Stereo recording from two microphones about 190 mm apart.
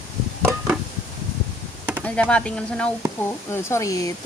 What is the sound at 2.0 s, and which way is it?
Speech, 5° left (ahead or behind).